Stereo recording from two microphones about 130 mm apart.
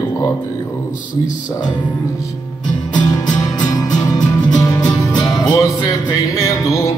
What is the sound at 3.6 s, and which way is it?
Music, 30° left (ahead or behind).